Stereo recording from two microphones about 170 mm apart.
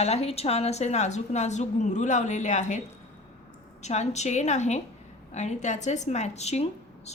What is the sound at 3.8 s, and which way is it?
A woman's voice, 40° left (ahead or behind).